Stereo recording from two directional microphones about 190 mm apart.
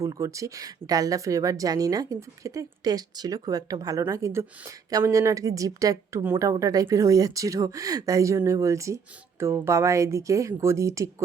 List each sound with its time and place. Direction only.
0.0 s a woman's voice: 15° right (ahead or behind)